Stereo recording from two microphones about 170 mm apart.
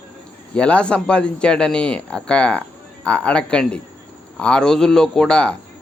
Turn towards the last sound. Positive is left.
turn(degrees=5)  # may be behind; listen again after turning